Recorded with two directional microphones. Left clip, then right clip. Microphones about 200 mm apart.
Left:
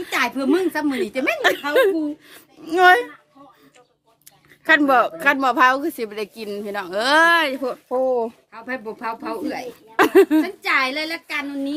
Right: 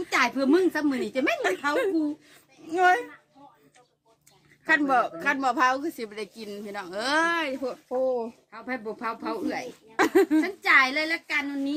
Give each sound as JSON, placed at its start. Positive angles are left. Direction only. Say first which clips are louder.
{"t": 0.1, "sound": "a woman's voice", "louder": "left 3 dB", "side_deg": 5}
{"t": 1.4, "sound": "speech", "louder": "left 8 dB", "side_deg": 40}
{"t": 4.6, "sound": "a woman's voice", "louder": "left 7 dB", "side_deg": 35}
{"t": 8.5, "sound": "a woman's voice", "louder": "even", "side_deg": 5}
{"t": 9.9, "sound": "a sound", "louder": "left 7 dB", "side_deg": 25}
{"t": 10.4, "sound": "a woman's voice", "louder": "even", "side_deg": 0}